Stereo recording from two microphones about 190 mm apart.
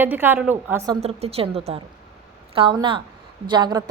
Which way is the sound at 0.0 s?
10° right (ahead or behind).